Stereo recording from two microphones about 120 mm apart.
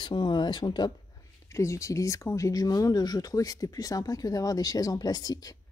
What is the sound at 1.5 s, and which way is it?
Speech, 25° left (ahead or behind).